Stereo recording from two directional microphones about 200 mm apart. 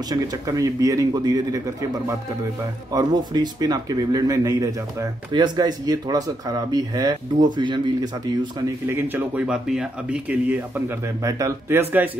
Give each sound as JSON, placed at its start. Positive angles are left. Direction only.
{"t": 0.1, "sound": "speech", "side_deg": -15}
{"t": 8.8, "sound": "speech", "side_deg": -10}